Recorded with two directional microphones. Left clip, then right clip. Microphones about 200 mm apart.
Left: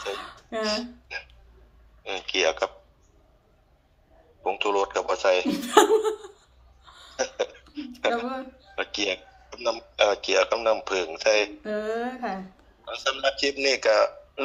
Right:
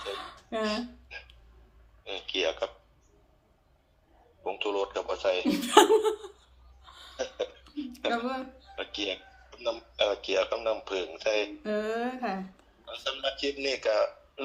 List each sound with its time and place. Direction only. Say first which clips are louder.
0.2 s a sound: left 2 dB; centre (ahead or behind)
1.0 s music: left 8 dB; 55° left (ahead or behind)
2.0 s a sound: left 6 dB; 55° left (ahead or behind)
4.4 s a man's voice: left 6 dB; 50° left (ahead or behind)
5.5 s speech: right 2 dB; 5° right (ahead or behind)
6.8 s a sound: left 1 dB; centre (ahead or behind)
7.2 s cough: left 6 dB; 50° left (ahead or behind)
8.1 s speech: left 2 dB; 5° right (ahead or behind)
8.7 s a man's voice: left 6 dB; 55° left (ahead or behind)
11.6 s speech: left 2 dB; 5° right (ahead or behind)
12.8 s a man's voice: left 7 dB; 50° left (ahead or behind)